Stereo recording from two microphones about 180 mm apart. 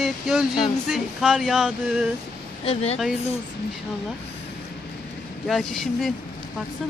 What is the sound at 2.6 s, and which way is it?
Speech, 35° left (ahead or behind).